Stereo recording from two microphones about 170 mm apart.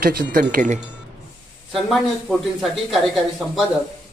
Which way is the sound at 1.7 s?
Centre (ahead or behind).